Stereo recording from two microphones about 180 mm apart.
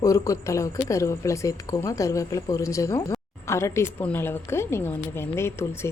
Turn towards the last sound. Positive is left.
turn(degrees=15)  # may be behind; listen again after turning